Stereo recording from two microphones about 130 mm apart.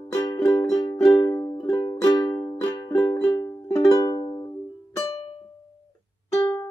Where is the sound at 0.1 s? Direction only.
30° left (ahead or behind).